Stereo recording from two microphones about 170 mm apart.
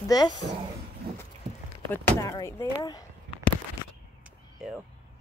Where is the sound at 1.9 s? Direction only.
15° left (ahead or behind).